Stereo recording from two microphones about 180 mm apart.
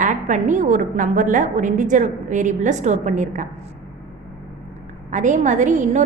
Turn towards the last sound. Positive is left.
turn(degrees=-45)  # may be behind; listen again after turning